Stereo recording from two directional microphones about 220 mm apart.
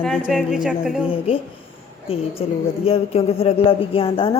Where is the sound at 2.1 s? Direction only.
25° left (ahead or behind).